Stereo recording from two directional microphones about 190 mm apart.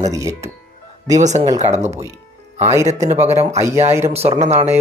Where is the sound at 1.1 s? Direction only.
40° right (ahead or behind).